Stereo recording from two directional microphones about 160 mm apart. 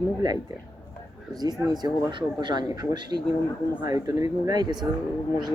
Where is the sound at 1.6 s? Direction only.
25° right (ahead or behind).